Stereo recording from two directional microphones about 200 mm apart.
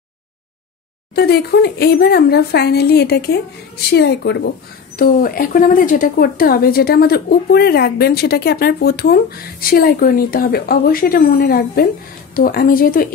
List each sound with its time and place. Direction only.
1.1 s a woman's voice: 50° left (ahead or behind)
4.9 s speech: 45° left (ahead or behind)